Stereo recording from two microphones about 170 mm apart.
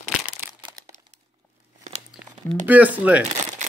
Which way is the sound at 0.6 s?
20° right (ahead or behind).